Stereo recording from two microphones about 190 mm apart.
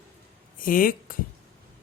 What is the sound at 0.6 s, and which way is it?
Speech, 45° left (ahead or behind).